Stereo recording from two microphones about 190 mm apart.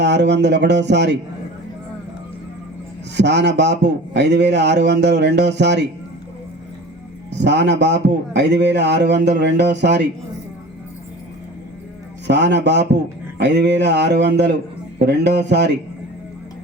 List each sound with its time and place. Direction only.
0.0 s a man's voice: 65° right (ahead or behind)
3.2 s a man's voice: 65° right (ahead or behind)
7.3 s a man's voice: 65° right (ahead or behind)
12.3 s a man's voice: 65° right (ahead or behind)